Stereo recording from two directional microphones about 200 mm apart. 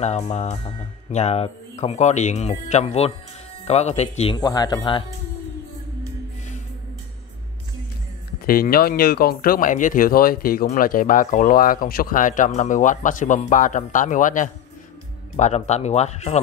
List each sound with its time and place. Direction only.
0.0 s speech: 35° left (ahead or behind)
4.4 s speech: 20° left (ahead or behind)
8.5 s speech: 50° left (ahead or behind)